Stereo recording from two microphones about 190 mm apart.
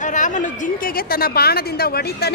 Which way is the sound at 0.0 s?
40° left (ahead or behind).